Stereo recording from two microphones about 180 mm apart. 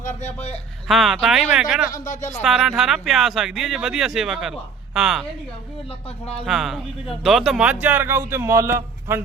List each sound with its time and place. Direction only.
0.0 s a sound: 40° left (ahead or behind)
0.9 s speech: centre (ahead or behind)
1.9 s speech: 45° left (ahead or behind)
2.4 s speech: centre (ahead or behind)
6.4 s speech: centre (ahead or behind)